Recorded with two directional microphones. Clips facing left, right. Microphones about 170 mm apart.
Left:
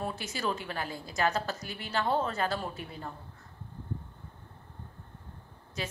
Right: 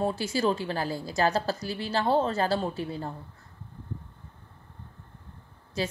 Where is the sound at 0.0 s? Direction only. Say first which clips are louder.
Right 8 dB; 30° right (ahead or behind).